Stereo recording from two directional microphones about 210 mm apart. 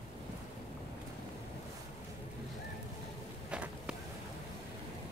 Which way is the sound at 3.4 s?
5° right (ahead or behind).